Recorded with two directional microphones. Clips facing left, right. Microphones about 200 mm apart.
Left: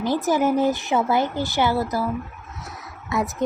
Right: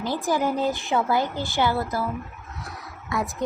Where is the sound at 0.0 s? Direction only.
20° left (ahead or behind).